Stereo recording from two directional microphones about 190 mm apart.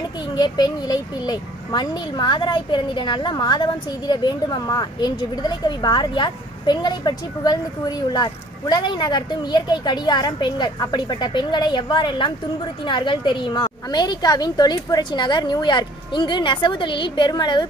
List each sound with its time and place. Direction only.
0.3 s a child's voice: 20° left (ahead or behind)